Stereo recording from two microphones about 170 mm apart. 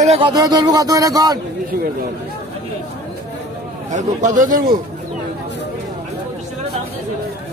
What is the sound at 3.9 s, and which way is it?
Speech, 45° right (ahead or behind).